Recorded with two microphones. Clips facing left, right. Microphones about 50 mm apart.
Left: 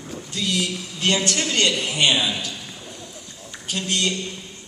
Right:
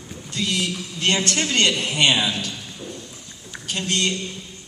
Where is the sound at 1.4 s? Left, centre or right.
Right.